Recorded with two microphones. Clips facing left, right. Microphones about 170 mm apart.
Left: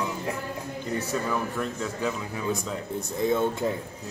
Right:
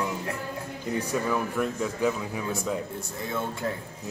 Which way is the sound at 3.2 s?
20° left (ahead or behind).